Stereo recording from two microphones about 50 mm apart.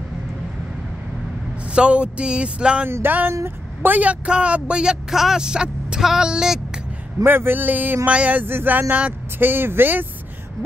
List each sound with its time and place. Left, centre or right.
1.7 s speech: right
3.8 s speech: right
5.1 s speech: centre
7.2 s speech: right
8.1 s speech: right
8.5 s speech: right